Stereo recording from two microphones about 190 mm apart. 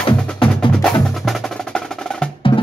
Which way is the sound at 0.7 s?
Centre (ahead or behind).